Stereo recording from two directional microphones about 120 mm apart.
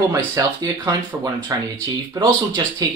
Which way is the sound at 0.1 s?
30° right (ahead or behind).